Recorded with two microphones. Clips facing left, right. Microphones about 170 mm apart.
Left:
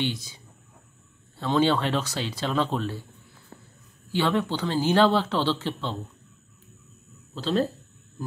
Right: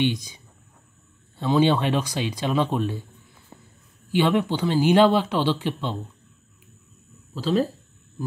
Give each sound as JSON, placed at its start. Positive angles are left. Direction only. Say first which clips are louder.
{"t": 0.0, "sound": "speech", "louder": "right 5 dB", "side_deg": -15}
{"t": 1.4, "sound": "a man's voice", "louder": "right 3 dB", "side_deg": -15}
{"t": 7.3, "sound": "a man's voice", "louder": "right 3 dB", "side_deg": -10}